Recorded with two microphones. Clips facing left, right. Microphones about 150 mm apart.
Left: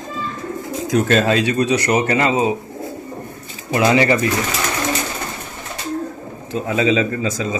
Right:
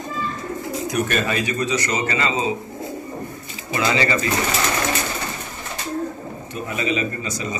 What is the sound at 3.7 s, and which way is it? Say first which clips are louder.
Speech: left 6 dB; 60° left (ahead or behind).